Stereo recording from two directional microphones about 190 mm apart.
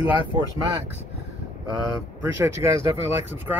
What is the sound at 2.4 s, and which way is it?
Speech, 15° right (ahead or behind).